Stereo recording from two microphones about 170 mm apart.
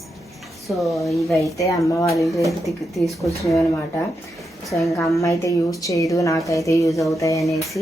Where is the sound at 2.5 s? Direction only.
Centre (ahead or behind).